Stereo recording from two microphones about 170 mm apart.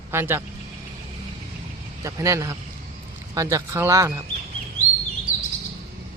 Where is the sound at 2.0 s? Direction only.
20° right (ahead or behind).